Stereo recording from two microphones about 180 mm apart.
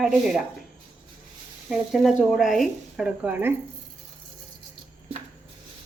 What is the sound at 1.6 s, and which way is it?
Speech, centre (ahead or behind).